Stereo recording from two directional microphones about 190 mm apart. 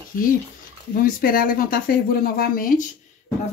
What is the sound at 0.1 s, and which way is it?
Speech, 50° left (ahead or behind).